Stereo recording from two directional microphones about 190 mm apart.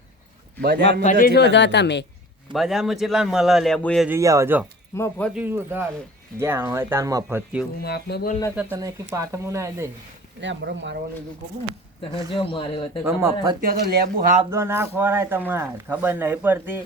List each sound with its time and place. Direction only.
0.6 s a man's voice: 55° right (ahead or behind)
1.2 s speech: 60° left (ahead or behind)
2.5 s a man's voice: centre (ahead or behind)
4.1 s speech: 15° right (ahead or behind)
4.9 s speech: 10° left (ahead or behind)
5.3 s speech: 10° right (ahead or behind)
7.8 s speech: 55° left (ahead or behind)
8.7 s speech: 15° right (ahead or behind)
10.4 s speech: 70° right (ahead or behind)
12.4 s speech: 30° left (ahead or behind)
13.1 s speech: 15° right (ahead or behind)
13.6 s speech: 50° right (ahead or behind)
14.5 s speech: 15° right (ahead or behind)